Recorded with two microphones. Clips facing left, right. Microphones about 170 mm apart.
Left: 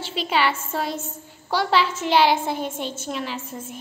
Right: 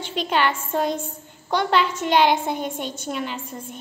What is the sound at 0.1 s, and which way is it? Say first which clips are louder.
A woman's voice: right 1 dB; 5° left (ahead or behind).